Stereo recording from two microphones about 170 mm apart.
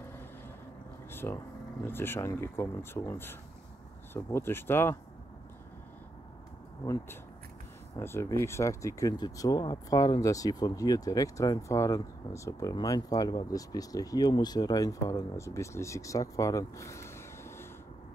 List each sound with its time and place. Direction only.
1.1 s a sound: 15° left (ahead or behind)
1.9 s speech: 15° left (ahead or behind)
6.8 s speech: 20° left (ahead or behind)